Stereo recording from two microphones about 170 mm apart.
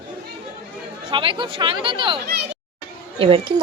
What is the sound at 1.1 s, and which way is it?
Speech, 30° right (ahead or behind).